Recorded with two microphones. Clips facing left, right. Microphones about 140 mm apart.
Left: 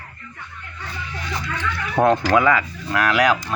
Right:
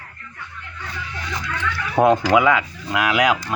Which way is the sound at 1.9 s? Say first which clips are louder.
Right 1 dB; 10° right (ahead or behind).